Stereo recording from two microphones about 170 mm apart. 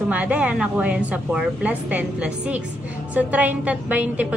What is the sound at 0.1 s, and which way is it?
A woman's voice, 10° right (ahead or behind).